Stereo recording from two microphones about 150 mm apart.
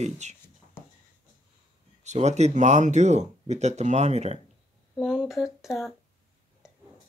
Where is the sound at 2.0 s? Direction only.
50° right (ahead or behind).